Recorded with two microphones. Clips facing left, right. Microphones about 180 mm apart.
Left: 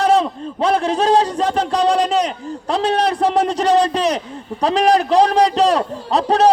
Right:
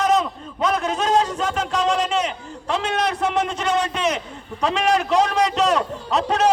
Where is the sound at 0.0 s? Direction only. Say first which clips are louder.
Left 4 dB; 30° left (ahead or behind).